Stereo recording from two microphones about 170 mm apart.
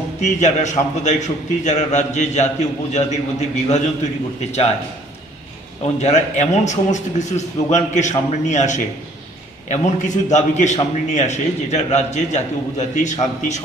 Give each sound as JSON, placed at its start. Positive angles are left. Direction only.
{"t": 0.4, "sound": "a man's voice", "side_deg": 45}
{"t": 5.9, "sound": "a man's voice", "side_deg": 45}